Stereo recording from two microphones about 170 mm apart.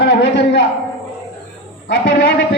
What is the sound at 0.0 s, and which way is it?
Speech, 75° left (ahead or behind).